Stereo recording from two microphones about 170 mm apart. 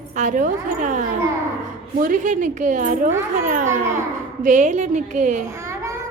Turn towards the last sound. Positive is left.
turn(degrees=-45)  # may be behind; listen again after turning